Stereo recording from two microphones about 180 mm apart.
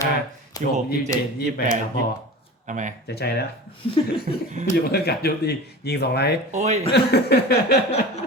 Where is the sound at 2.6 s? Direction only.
45° right (ahead or behind).